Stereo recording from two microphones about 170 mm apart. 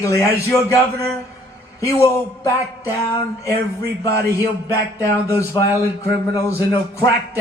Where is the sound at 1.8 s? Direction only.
15° left (ahead or behind).